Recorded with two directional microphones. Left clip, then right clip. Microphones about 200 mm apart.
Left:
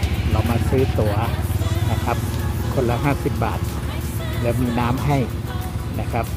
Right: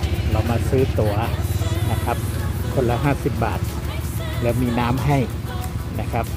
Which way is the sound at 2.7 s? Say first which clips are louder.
Right 1 dB; 5° right (ahead or behind).